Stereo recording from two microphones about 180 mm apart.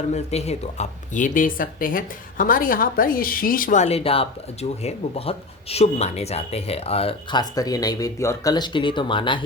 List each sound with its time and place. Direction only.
0.1 s speech: 35° left (ahead or behind)